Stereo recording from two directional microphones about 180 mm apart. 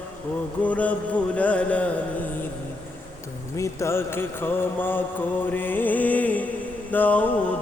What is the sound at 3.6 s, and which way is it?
Music, 15° left (ahead or behind).